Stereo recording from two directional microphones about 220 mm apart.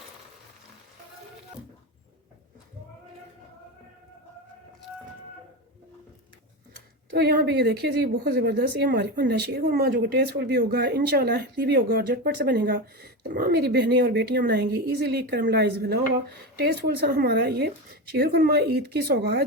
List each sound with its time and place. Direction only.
7.1 s a woman's voice: 50° right (ahead or behind)